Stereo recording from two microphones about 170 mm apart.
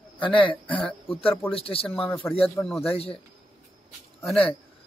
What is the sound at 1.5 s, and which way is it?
Speech, 35° left (ahead or behind).